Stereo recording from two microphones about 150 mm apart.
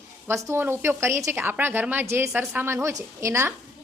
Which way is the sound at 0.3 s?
20° right (ahead or behind).